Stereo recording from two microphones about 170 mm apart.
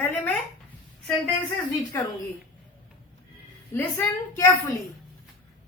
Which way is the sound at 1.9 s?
15° left (ahead or behind).